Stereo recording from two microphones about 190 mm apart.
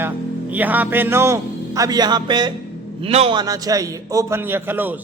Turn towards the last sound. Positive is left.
turn(degrees=-10)  # may be behind; listen again after turning